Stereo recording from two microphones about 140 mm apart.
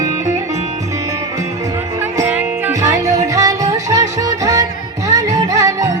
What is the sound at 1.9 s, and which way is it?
Music, 20° right (ahead or behind).